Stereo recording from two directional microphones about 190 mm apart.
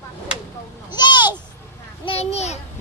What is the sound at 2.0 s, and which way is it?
Speech, 30° left (ahead or behind).